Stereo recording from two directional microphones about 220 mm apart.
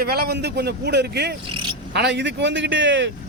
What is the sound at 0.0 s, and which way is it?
A man's voice, 45° right (ahead or behind).